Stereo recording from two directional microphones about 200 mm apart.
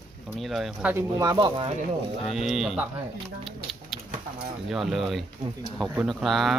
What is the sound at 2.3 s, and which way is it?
Speech, centre (ahead or behind).